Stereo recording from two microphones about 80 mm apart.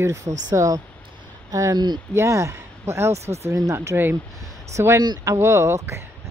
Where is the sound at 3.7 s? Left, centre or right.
Right.